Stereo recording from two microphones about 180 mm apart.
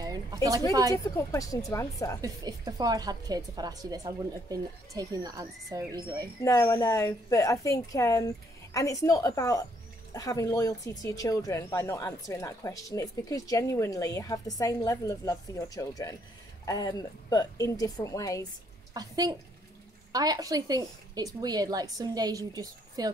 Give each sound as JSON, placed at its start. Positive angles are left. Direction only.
{"t": 0.0, "sound": "speech", "side_deg": -20}
{"t": 0.9, "sound": "speech", "side_deg": 15}
{"t": 2.2, "sound": "a woman's voice", "side_deg": -20}
{"t": 6.4, "sound": "speech", "side_deg": 15}
{"t": 18.9, "sound": "a woman's voice", "side_deg": -20}